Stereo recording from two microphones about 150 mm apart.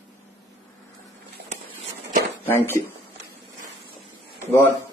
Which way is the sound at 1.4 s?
90° right.